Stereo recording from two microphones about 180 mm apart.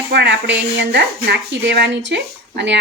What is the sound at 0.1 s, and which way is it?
A woman's voice, 70° right (ahead or behind).